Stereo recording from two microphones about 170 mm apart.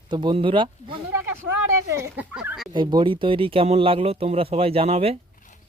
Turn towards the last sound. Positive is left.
turn(degrees=-35)  # may be behind; listen again after turning